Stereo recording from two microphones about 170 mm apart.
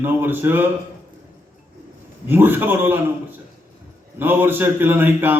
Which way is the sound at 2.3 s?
10° right (ahead or behind).